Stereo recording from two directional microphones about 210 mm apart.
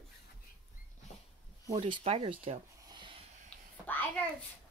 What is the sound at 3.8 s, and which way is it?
Speech, 10° left (ahead or behind).